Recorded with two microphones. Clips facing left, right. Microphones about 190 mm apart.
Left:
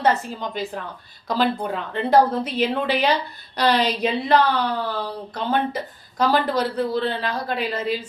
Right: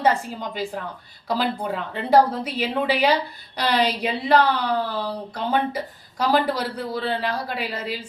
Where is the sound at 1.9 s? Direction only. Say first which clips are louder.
Left 1 dB; 10° right (ahead or behind).